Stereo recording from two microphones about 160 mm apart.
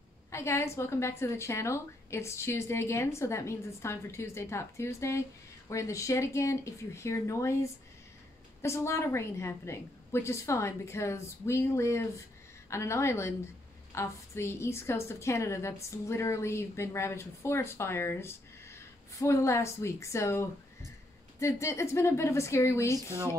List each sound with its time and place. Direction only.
0.3 s a woman's voice: 15° left (ahead or behind)